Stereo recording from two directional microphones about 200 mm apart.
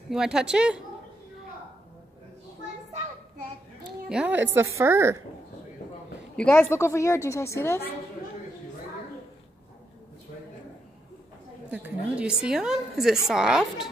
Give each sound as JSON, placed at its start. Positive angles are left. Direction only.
{"t": 0.1, "sound": "a woman's voice", "side_deg": -5}
{"t": 4.1, "sound": "a woman's voice", "side_deg": -5}
{"t": 6.3, "sound": "a woman's voice", "side_deg": 5}
{"t": 11.7, "sound": "a woman's voice", "side_deg": -5}